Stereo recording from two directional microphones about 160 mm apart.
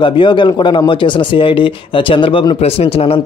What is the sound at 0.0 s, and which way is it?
Speech, 30° left (ahead or behind).